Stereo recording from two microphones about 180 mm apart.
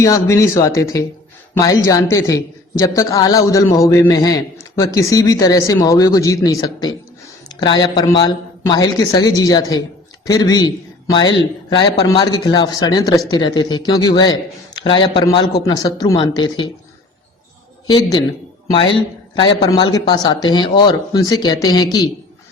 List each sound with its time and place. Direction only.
0.0 s a man's voice: 15° left (ahead or behind)
17.8 s speech: 25° left (ahead or behind)